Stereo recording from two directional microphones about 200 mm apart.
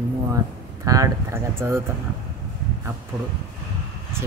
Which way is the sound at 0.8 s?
15° right (ahead or behind).